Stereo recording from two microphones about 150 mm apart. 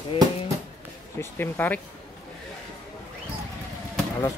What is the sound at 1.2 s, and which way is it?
Speech, 15° left (ahead or behind).